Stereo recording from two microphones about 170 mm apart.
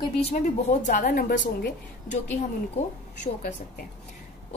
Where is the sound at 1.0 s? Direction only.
60° left (ahead or behind).